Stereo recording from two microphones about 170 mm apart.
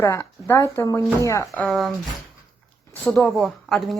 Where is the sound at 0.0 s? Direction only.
15° left (ahead or behind).